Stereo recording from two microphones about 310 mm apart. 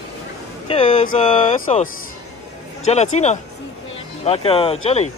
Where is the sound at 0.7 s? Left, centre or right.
Centre.